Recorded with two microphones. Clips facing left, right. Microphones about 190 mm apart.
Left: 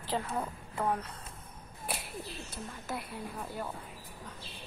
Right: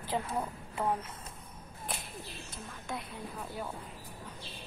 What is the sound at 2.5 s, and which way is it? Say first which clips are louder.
Speech: even; 5° left (ahead or behind).